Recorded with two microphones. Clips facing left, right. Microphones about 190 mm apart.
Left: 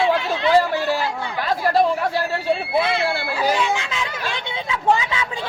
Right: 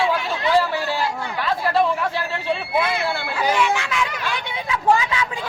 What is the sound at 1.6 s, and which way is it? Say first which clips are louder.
Speech: left 2 dB; 40° left (ahead or behind).